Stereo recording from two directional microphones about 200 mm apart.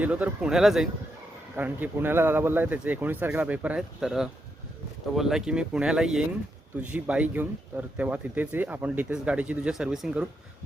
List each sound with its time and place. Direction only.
0.0 s speech: 10° right (ahead or behind)